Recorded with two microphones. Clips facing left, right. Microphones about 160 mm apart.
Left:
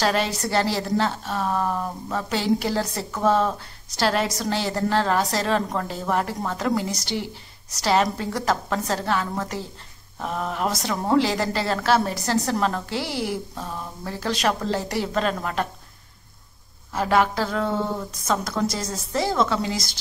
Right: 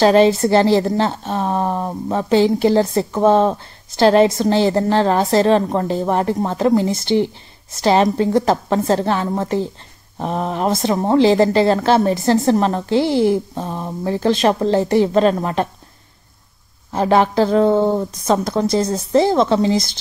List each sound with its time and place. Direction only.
0.0 s a woman's voice: 25° right (ahead or behind)
16.9 s a woman's voice: 30° right (ahead or behind)
18.8 s speech: 55° right (ahead or behind)
19.1 s a woman's voice: 25° right (ahead or behind)